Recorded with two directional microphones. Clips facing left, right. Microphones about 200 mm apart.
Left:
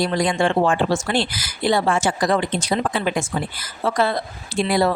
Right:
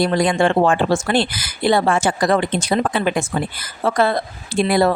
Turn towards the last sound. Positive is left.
turn(degrees=-55)  # may be behind; listen again after turning